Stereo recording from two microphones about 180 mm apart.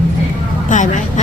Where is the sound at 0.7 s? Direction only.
45° left (ahead or behind).